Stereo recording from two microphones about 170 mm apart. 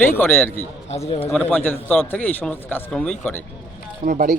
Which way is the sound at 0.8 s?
40° left (ahead or behind).